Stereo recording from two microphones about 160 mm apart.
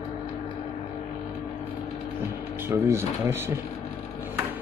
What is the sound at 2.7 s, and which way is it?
Speech, 15° right (ahead or behind).